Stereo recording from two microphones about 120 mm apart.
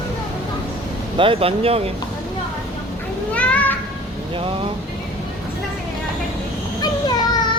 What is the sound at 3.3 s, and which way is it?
Children playing, 10° left (ahead or behind).